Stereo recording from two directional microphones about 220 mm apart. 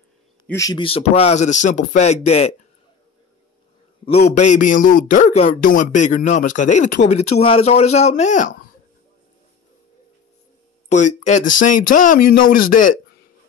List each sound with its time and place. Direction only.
0.5 s speech: 15° left (ahead or behind)
4.0 s a man's voice: 30° left (ahead or behind)
10.9 s a man's voice: 35° left (ahead or behind)